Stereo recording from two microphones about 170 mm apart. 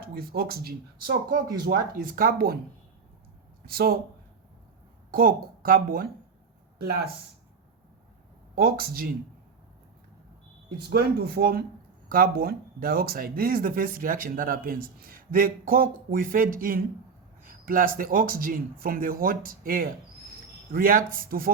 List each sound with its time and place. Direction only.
0.0 s speech: 65° right (ahead or behind)
3.7 s speech: 65° right (ahead or behind)
5.1 s speech: 60° right (ahead or behind)
8.5 s speech: 65° right (ahead or behind)
10.8 s speech: 70° right (ahead or behind)